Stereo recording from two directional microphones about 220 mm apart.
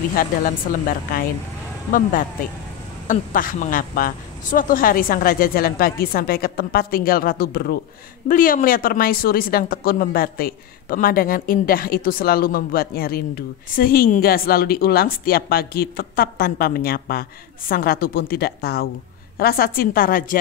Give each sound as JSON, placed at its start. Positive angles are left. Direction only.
{"t": 0.7, "sound": "speech", "side_deg": 40}
{"t": 1.9, "sound": "a woman's voice", "side_deg": 40}